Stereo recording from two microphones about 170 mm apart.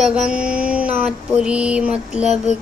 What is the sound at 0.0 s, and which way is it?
Mantra, 5° right (ahead or behind).